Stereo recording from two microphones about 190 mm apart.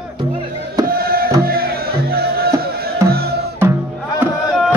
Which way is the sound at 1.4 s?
50° right (ahead or behind).